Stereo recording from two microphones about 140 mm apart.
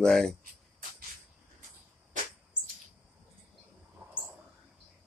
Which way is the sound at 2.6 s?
30° right (ahead or behind).